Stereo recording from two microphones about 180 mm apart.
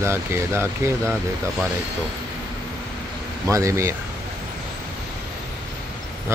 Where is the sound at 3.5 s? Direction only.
15° right (ahead or behind).